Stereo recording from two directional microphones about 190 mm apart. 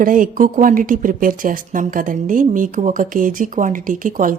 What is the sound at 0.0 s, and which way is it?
A woman's voice, 45° right (ahead or behind).